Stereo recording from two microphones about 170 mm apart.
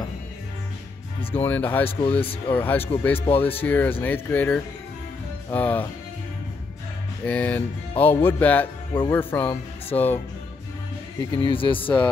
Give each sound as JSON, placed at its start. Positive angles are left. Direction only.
{"t": 1.3, "sound": "speech", "side_deg": 10}
{"t": 1.9, "sound": "speech", "side_deg": 35}
{"t": 2.5, "sound": "speech", "side_deg": 10}
{"t": 3.2, "sound": "speech", "side_deg": 35}
{"t": 3.5, "sound": "speech", "side_deg": 10}
{"t": 7.2, "sound": "speech", "side_deg": 10}
{"t": 11.1, "sound": "speech", "side_deg": 30}